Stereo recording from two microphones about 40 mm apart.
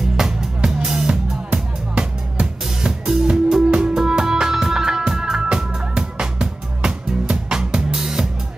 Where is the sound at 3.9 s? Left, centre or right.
Centre.